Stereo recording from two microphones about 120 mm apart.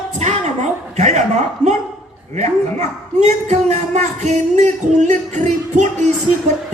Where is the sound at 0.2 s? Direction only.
80° right.